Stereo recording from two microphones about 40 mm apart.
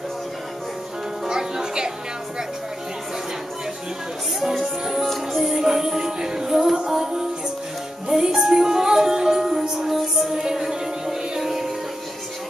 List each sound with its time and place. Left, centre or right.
1.2 s music: centre
4.4 s music: centre
5.5 s music: centre